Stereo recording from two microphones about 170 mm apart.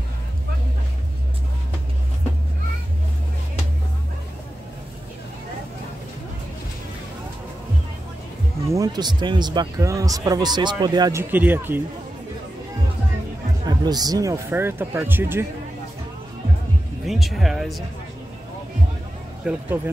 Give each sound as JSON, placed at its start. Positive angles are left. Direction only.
{"t": 8.6, "sound": "speech", "side_deg": -20}
{"t": 13.7, "sound": "speech", "side_deg": -25}
{"t": 17.0, "sound": "speech", "side_deg": 0}
{"t": 19.4, "sound": "speech", "side_deg": -5}